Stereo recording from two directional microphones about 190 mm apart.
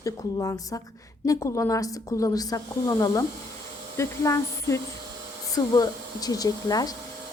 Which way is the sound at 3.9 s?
15° left (ahead or behind).